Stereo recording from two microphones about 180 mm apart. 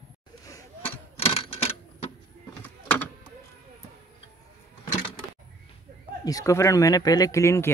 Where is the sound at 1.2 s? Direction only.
30° left (ahead or behind).